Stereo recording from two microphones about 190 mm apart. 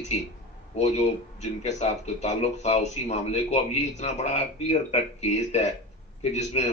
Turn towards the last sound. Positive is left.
turn(degrees=35)  # may be behind; listen again after turning